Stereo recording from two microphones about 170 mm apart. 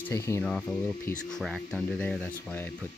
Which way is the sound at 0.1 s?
15° left (ahead or behind).